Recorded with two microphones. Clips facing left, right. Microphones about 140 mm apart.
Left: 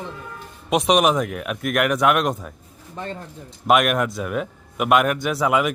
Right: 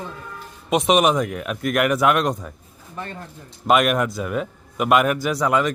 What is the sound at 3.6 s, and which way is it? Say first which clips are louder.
A man's voice: even; centre (ahead or behind).